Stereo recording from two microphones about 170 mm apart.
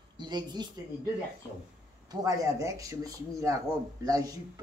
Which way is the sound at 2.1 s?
20° right (ahead or behind).